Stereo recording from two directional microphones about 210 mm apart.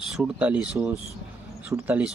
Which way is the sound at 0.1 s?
5° right (ahead or behind).